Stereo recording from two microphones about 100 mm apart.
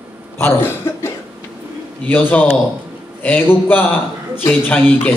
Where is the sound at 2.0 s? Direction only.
15° left (ahead or behind).